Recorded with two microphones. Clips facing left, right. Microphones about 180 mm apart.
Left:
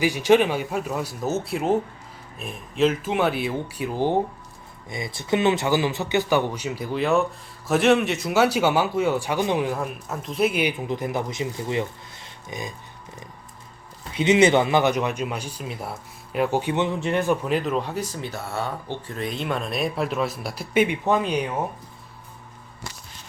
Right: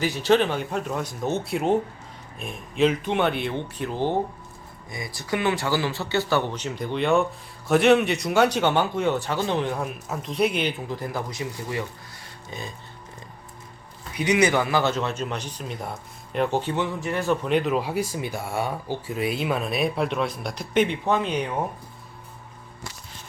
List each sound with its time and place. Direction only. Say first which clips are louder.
0.0 s speech: left 3 dB; 15° left (ahead or behind)
4.9 s speech: left 4 dB; 25° left (ahead or behind)
9.6 s speech: left 1 dB; centre (ahead or behind)
14.1 s speech: left 4 dB; 25° left (ahead or behind)
16.7 s speech: left 3 dB; 25° left (ahead or behind)
17.4 s speech: right 1 dB; centre (ahead or behind)